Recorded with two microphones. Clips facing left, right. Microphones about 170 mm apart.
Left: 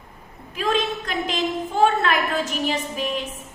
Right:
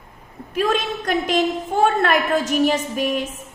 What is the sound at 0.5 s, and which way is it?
A woman's voice, 50° right (ahead or behind).